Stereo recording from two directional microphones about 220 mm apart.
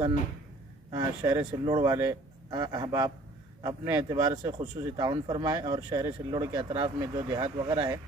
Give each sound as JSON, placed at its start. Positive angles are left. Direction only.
{"t": 0.9, "sound": "speech", "side_deg": -15}